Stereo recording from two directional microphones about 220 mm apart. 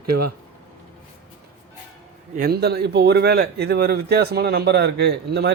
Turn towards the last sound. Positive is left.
turn(degrees=-50)  # may be behind; listen again after turning